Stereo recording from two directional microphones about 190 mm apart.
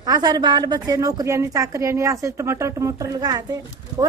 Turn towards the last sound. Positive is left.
turn(degrees=-20)  # may be behind; listen again after turning